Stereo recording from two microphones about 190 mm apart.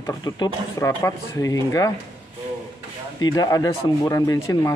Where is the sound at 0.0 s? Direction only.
20° left (ahead or behind).